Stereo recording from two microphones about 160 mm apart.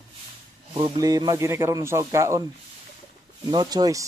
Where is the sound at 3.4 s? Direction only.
25° right (ahead or behind).